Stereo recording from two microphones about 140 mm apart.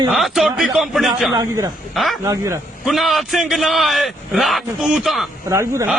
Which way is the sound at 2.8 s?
Centre (ahead or behind).